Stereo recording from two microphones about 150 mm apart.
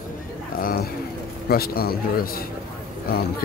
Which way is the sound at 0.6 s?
70° left (ahead or behind).